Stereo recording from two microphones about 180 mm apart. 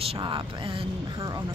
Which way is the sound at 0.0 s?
30° right (ahead or behind).